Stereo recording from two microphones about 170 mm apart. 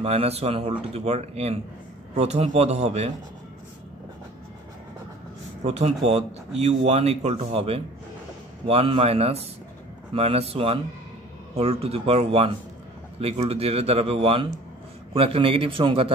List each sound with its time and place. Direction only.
0.0 s speech: 35° right (ahead or behind)
5.6 s speech: 40° right (ahead or behind)